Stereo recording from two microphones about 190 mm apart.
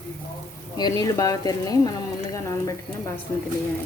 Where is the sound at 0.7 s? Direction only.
20° left (ahead or behind).